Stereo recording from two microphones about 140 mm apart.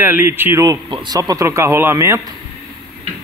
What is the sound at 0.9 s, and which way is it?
Speech, 35° right (ahead or behind).